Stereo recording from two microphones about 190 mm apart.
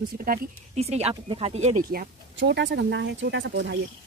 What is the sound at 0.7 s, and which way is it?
Speech, 35° right (ahead or behind).